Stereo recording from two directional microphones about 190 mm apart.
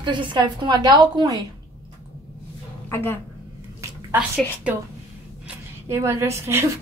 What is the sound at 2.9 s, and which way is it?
Speech, 10° left (ahead or behind).